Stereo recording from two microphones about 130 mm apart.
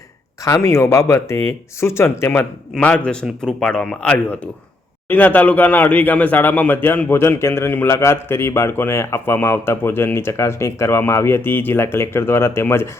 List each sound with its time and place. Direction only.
0.4 s speech: 25° left (ahead or behind)